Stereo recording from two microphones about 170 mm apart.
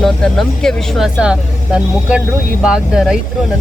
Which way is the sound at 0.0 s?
5° left (ahead or behind).